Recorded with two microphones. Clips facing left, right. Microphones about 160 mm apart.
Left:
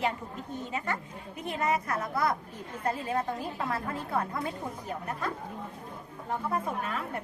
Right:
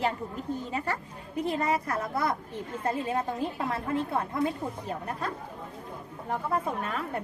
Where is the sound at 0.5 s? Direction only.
35° right (ahead or behind).